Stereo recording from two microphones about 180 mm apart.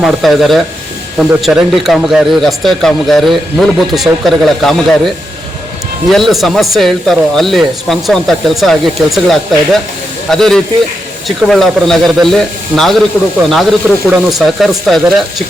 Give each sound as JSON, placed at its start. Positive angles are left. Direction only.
{"t": 0.0, "sound": "a man's voice", "side_deg": 0}